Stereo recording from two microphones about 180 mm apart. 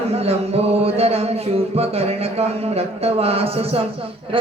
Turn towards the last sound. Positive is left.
turn(degrees=-30)  # may be behind; listen again after turning